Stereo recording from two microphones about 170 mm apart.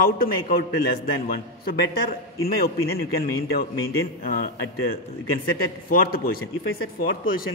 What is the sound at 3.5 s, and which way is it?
Speech, 60° left (ahead or behind).